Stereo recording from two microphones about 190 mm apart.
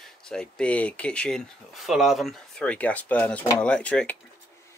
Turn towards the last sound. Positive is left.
turn(degrees=5)  # may be behind; listen again after turning